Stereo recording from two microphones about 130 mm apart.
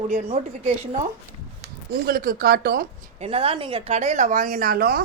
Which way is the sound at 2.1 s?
90° right.